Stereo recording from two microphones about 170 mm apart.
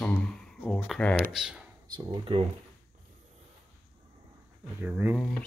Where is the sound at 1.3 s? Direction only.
5° right (ahead or behind).